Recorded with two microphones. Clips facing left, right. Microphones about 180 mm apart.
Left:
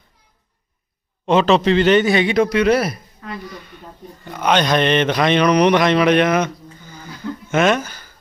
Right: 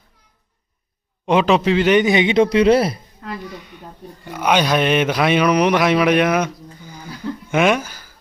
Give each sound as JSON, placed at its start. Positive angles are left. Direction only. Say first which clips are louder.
{"t": 1.2, "sound": "speech", "louder": "left 1 dB", "side_deg": -10}
{"t": 4.3, "sound": "speech", "louder": "even", "side_deg": -10}